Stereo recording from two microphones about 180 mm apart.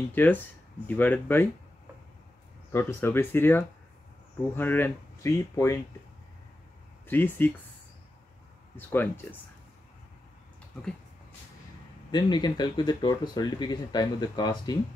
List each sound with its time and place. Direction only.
0.1 s speech: 10° left (ahead or behind)
2.7 s speech: 15° left (ahead or behind)
7.1 s speech: 10° left (ahead or behind)
8.7 s speech: 10° left (ahead or behind)
12.1 s speech: 25° left (ahead or behind)